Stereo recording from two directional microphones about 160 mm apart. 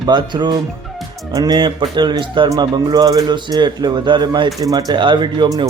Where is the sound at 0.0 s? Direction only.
30° right (ahead or behind).